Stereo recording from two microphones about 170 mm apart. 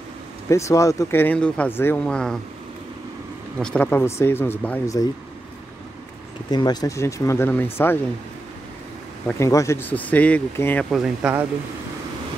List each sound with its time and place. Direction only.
0.5 s speech: 20° left (ahead or behind)
3.5 s speech: 5° left (ahead or behind)
6.5 s speech: 25° left (ahead or behind)
9.4 s speech: 15° left (ahead or behind)
10.9 s speech: centre (ahead or behind)